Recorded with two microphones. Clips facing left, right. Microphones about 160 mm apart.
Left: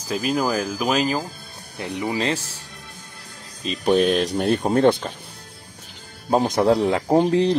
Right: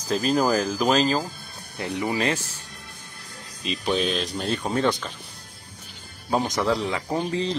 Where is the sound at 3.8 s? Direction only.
55° left (ahead or behind).